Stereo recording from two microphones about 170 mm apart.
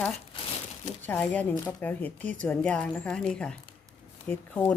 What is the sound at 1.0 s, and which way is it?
A woman's voice, 10° left (ahead or behind).